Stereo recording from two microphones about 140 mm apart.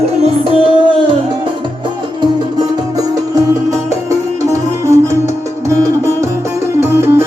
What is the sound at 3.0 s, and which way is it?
Music, 25° right (ahead or behind).